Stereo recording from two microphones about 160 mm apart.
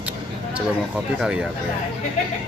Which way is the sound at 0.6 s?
5° right (ahead or behind).